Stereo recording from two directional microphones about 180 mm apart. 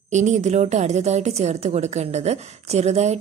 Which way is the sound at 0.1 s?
40° right (ahead or behind).